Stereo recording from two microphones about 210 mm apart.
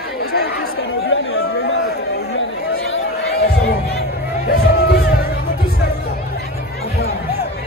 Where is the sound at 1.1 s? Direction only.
65° left (ahead or behind).